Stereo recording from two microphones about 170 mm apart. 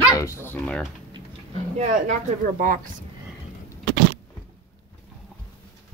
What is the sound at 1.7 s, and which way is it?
Speech, 45° right (ahead or behind).